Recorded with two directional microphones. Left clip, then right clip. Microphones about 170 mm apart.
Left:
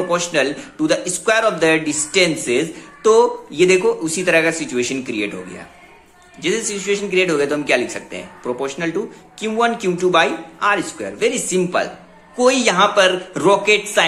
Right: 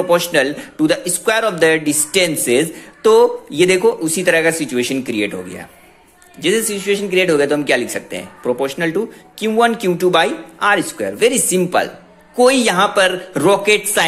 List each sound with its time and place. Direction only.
0.1 s a man's voice: 30° right (ahead or behind)
6.4 s a man's voice: 25° right (ahead or behind)